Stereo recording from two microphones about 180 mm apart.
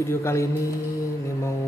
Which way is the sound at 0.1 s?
15° left (ahead or behind).